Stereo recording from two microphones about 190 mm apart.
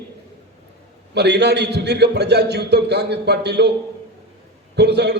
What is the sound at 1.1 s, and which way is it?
A man's voice, 60° right (ahead or behind).